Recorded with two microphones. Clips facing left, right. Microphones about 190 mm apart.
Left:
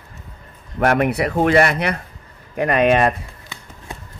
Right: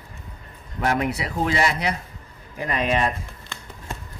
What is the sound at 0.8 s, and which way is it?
Speech, 60° left (ahead or behind).